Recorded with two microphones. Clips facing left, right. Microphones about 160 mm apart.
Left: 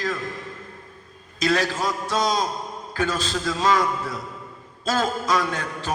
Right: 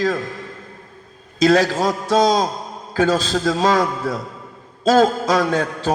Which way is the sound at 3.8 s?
35° right (ahead or behind).